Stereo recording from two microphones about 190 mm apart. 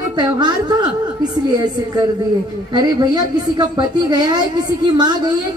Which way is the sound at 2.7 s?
20° right (ahead or behind).